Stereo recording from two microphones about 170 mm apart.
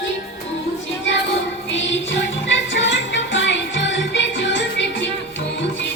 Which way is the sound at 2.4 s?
90° left.